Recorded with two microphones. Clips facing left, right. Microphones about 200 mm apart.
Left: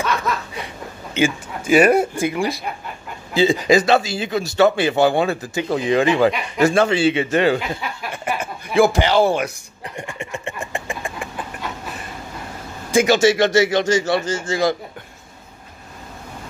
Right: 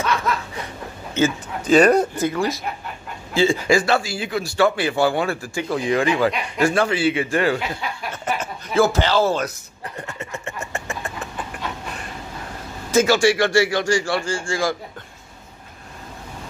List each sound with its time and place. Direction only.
1.1 s speech: 10° left (ahead or behind)
8.1 s a sound: 10° left (ahead or behind)
12.9 s speech: 20° left (ahead or behind)